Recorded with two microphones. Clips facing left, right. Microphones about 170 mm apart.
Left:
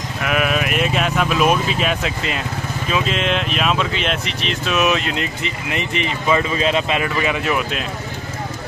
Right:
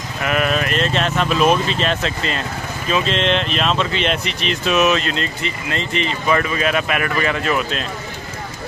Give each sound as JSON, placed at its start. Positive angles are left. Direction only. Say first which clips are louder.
{"t": 0.2, "sound": "speech", "louder": "right 1 dB", "side_deg": 5}
{"t": 4.8, "sound": "speech", "louder": "right 1 dB", "side_deg": 15}